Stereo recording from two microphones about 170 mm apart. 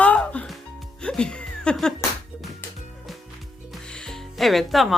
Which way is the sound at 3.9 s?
5° left (ahead or behind).